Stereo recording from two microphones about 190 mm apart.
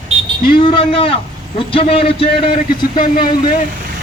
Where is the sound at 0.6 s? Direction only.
30° left (ahead or behind).